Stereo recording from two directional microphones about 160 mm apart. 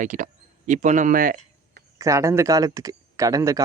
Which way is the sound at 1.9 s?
20° right (ahead or behind).